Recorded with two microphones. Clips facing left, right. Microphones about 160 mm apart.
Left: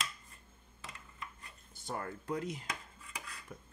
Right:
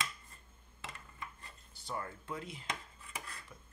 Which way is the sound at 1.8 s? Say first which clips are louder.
Left 2 dB; 45° left (ahead or behind).